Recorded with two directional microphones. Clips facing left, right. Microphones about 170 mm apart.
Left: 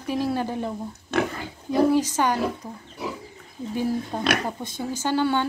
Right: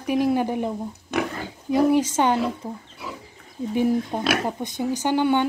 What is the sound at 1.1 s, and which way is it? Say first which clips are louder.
Pig: left 1 dB; 15° right (ahead or behind).